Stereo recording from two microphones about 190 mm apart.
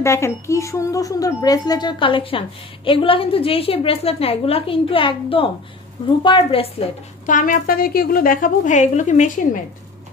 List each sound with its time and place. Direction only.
0.0 s speech: 15° left (ahead or behind)
7.2 s a woman's voice: 45° left (ahead or behind)